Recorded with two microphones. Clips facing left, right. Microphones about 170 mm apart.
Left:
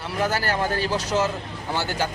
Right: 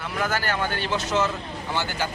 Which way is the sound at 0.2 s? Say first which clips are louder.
Left 2 dB; 35° left (ahead or behind).